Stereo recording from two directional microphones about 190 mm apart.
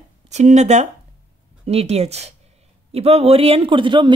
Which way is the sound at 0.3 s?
35° right (ahead or behind).